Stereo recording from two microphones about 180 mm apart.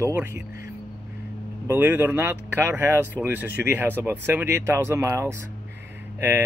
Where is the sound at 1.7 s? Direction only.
10° right (ahead or behind).